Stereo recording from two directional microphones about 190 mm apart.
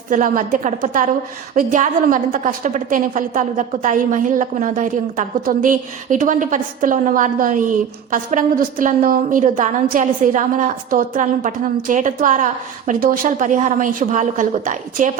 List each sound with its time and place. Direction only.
0.1 s a woman's voice: 45° right (ahead or behind)